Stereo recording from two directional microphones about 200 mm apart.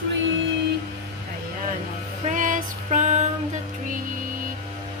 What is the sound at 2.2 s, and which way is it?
Music, 40° right (ahead or behind).